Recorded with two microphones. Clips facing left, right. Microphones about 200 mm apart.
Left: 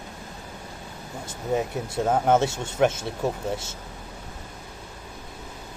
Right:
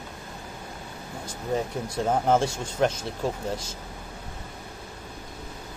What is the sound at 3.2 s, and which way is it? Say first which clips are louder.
Speech: left 2 dB; 25° left (ahead or behind).